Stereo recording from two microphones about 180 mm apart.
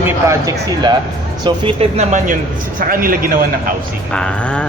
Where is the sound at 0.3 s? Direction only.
20° right (ahead or behind).